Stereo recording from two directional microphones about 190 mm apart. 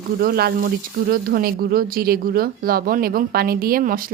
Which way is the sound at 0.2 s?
55° right (ahead or behind).